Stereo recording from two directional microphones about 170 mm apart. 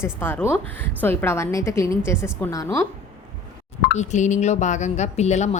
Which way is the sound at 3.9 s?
45° left (ahead or behind).